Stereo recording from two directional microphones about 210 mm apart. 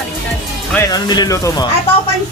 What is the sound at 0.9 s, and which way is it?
Speech, 20° left (ahead or behind).